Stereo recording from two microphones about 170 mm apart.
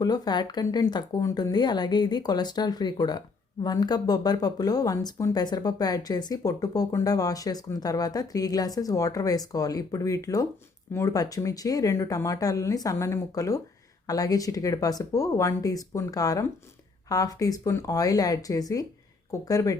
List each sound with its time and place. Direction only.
0.0 s speech: 25° left (ahead or behind)